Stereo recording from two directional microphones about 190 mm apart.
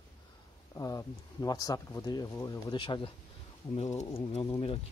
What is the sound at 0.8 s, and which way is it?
Speech, 20° left (ahead or behind).